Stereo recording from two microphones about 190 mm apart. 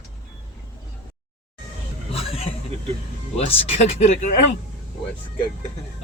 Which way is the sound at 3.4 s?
35° left (ahead or behind).